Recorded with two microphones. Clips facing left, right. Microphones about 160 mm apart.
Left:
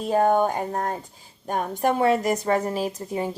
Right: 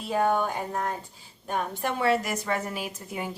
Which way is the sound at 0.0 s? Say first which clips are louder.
Left 5 dB; 40° left (ahead or behind).